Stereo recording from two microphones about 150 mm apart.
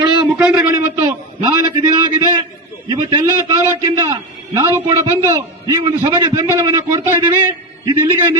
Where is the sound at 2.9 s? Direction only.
30° right (ahead or behind).